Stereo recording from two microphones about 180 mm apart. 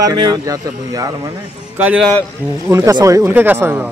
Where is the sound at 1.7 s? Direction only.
10° right (ahead or behind).